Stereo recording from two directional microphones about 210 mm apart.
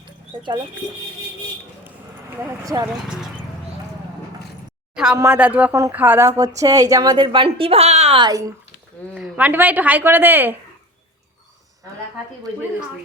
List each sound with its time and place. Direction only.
2.4 s speech: 15° right (ahead or behind)
4.9 s a woman's voice: 10° right (ahead or behind)
9.1 s speech: 5° right (ahead or behind)